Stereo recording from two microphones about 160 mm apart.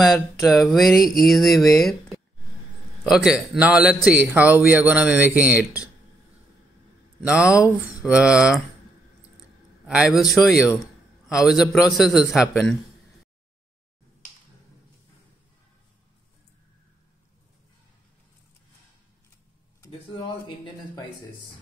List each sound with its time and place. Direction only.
0.5 s a man's voice: centre (ahead or behind)
3.0 s a man's voice: centre (ahead or behind)
7.2 s a man's voice: 5° right (ahead or behind)
9.8 s a man's voice: 5° right (ahead or behind)
20.4 s a sound: 30° left (ahead or behind)